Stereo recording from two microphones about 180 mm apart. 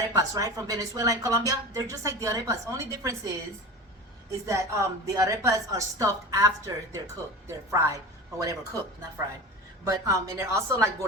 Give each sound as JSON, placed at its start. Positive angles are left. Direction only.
{"t": 0.1, "sound": "speech", "side_deg": -20}